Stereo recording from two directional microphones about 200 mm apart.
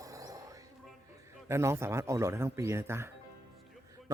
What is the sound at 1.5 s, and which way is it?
Speech, 15° right (ahead or behind).